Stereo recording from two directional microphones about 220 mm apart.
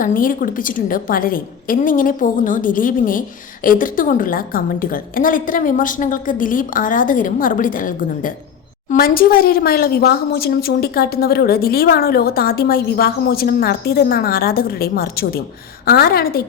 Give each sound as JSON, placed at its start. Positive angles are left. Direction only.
{"t": 0.0, "sound": "a woman's voice", "side_deg": 40}